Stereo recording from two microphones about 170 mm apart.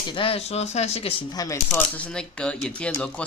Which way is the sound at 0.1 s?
30° left (ahead or behind).